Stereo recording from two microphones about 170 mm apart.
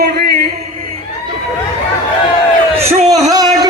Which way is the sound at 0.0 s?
70° right (ahead or behind).